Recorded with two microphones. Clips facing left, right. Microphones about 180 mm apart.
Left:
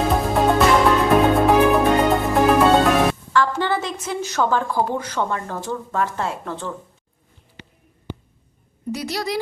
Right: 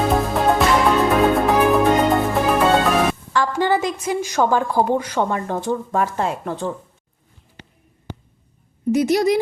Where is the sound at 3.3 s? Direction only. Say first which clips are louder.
Right 2 dB; 15° right (ahead or behind).